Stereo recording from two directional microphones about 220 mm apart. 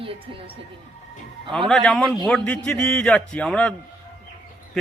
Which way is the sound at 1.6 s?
Centre (ahead or behind).